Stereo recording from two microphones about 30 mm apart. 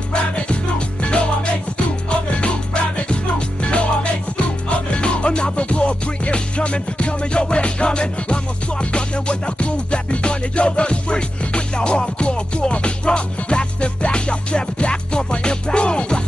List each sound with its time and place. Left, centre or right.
0.1 s music: left
5.8 s music: left